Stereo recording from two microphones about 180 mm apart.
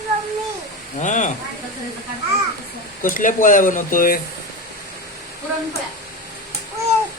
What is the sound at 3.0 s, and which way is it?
Speech, 50° left (ahead or behind).